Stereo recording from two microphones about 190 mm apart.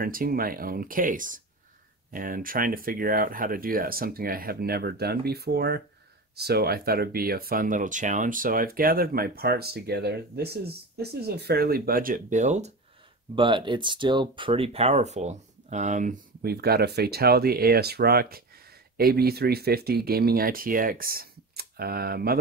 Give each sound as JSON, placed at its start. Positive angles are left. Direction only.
{"t": 0.0, "sound": "speech", "side_deg": -50}
{"t": 13.3, "sound": "speech", "side_deg": -25}